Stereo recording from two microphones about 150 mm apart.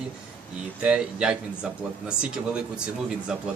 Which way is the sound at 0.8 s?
5° right (ahead or behind).